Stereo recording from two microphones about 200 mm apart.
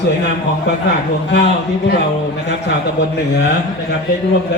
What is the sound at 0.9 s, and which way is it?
Speech, 60° left (ahead or behind).